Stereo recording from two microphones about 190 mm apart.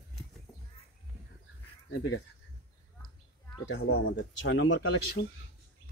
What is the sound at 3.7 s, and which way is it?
Speech, 85° left.